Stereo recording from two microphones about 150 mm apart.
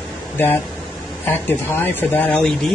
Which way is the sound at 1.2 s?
15° left (ahead or behind).